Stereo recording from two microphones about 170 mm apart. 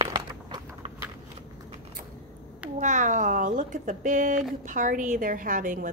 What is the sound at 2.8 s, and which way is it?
A woman's voice, 50° right (ahead or behind).